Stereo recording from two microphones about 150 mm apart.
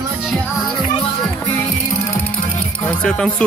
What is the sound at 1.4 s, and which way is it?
Music, 15° left (ahead or behind).